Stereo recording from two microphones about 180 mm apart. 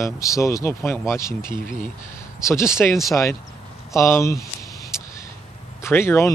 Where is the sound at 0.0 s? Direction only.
15° left (ahead or behind).